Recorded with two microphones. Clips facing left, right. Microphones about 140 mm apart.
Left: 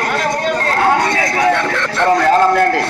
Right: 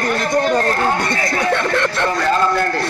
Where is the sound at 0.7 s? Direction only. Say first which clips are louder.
Left 4 dB; 80° left.